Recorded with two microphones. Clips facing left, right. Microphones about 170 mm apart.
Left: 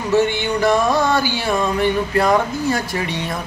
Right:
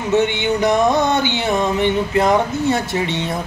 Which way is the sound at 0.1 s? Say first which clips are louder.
Even; 20° right (ahead or behind).